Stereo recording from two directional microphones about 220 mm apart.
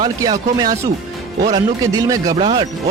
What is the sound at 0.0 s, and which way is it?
Speech, 20° right (ahead or behind).